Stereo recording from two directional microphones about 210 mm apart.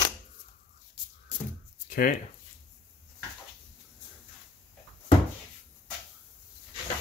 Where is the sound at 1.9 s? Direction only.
40° left (ahead or behind).